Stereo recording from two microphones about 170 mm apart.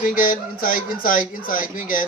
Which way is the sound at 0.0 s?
50° left (ahead or behind).